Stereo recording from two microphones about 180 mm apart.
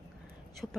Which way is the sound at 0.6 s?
Centre (ahead or behind).